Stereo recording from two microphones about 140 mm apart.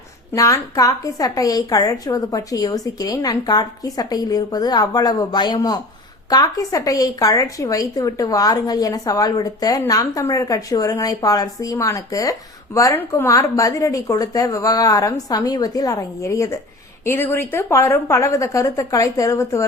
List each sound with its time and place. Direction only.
0.3 s a woman's voice: 25° left (ahead or behind)